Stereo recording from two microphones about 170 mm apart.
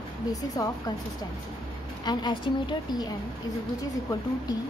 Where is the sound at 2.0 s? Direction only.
25° left (ahead or behind).